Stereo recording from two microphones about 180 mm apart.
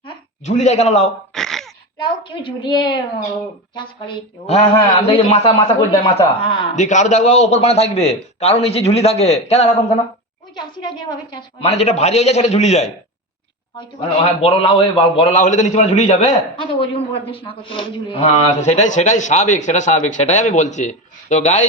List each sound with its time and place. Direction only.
0.4 s a man's voice: 40° left (ahead or behind)
1.3 s a sound: centre (ahead or behind)
2.0 s a woman's voice: 25° left (ahead or behind)
6.7 s a man's voice: 40° left (ahead or behind)
10.5 s a woman's voice: 25° left (ahead or behind)
11.7 s a man's voice: 35° left (ahead or behind)